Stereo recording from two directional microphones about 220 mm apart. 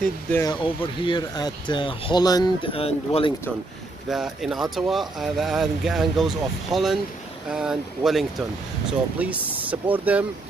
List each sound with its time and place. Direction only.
0.3 s speech: 15° left (ahead or behind)
4.1 s speech: centre (ahead or behind)